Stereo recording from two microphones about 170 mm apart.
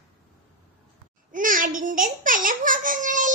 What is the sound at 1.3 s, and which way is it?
Babbling, 50° right (ahead or behind).